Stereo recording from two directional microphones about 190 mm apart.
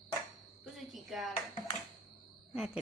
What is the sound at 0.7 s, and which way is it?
Cricket, centre (ahead or behind).